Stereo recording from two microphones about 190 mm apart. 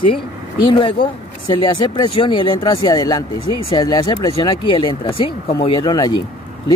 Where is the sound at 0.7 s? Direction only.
25° left (ahead or behind).